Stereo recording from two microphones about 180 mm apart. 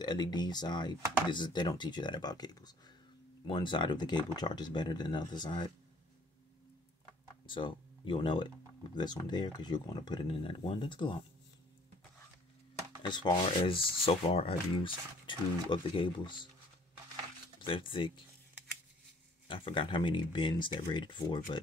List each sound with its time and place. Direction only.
0.0 s speech: 25° left (ahead or behind)
7.4 s speech: 25° left (ahead or behind)
13.1 s speech: 25° left (ahead or behind)
17.6 s speech: 30° left (ahead or behind)
19.4 s speech: 30° left (ahead or behind)